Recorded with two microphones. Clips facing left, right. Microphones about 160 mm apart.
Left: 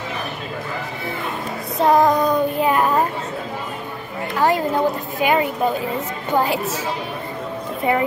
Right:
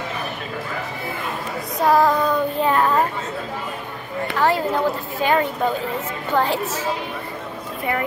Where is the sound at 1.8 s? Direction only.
20° left (ahead or behind).